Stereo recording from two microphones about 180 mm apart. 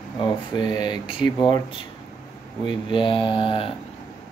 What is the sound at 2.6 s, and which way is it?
Speech, 25° left (ahead or behind).